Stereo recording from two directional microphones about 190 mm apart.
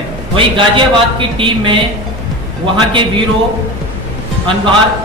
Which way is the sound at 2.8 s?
25° right (ahead or behind).